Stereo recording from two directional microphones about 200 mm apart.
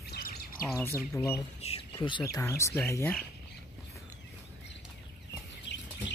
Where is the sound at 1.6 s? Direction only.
30° left (ahead or behind); by 3.2 s 10° left (ahead or behind).